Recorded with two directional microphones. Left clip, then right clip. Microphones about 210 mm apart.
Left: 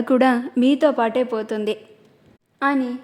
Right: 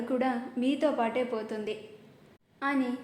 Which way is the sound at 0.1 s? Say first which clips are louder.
Left 13 dB; 50° left (ahead or behind).